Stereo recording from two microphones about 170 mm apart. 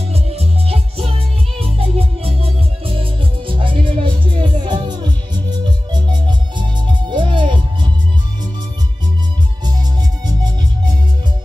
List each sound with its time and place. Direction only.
0.1 s music: 35° right (ahead or behind)
9.7 s music: 25° right (ahead or behind)